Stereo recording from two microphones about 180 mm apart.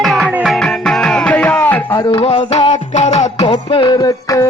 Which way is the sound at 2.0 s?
25° left (ahead or behind).